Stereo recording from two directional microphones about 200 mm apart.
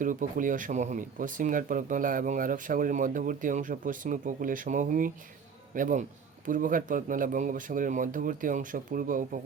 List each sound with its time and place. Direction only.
0.0 s speech: 40° right (ahead or behind)